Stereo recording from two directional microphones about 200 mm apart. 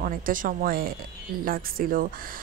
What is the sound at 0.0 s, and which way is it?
A woman's voice, 45° right (ahead or behind).